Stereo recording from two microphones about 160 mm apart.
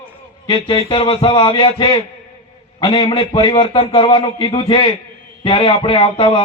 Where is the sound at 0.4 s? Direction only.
30° left (ahead or behind).